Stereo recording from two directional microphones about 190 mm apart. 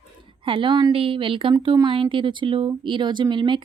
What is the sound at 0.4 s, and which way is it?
A woman's voice, 25° right (ahead or behind).